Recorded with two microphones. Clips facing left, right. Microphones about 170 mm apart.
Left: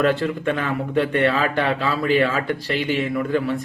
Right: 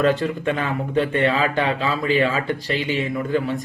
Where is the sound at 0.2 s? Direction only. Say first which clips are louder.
Even; 20° right (ahead or behind).